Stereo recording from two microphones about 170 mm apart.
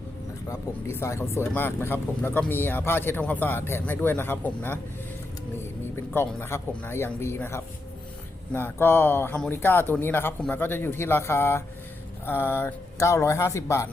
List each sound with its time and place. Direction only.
0.5 s speech: 15° left (ahead or behind)
6.1 s speech: 15° left (ahead or behind)